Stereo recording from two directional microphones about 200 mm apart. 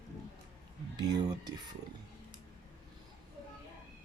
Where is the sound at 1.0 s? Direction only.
20° right (ahead or behind).